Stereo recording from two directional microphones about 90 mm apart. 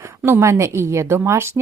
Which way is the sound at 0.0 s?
25° right (ahead or behind).